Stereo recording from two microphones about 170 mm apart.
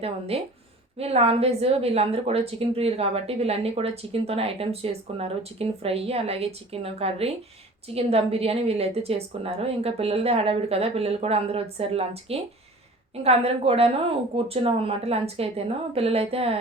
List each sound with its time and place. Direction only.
0.3 s a woman's voice: 35° right (ahead or behind)